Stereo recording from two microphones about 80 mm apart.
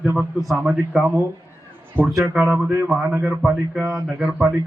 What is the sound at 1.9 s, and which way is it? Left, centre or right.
Speech, right.